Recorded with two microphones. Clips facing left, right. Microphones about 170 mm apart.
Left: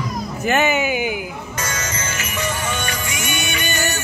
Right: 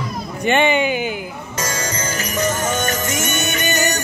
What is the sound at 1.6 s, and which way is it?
Music, 35° right (ahead or behind).